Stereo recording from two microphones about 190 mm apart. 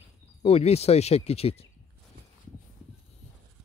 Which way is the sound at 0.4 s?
30° left (ahead or behind).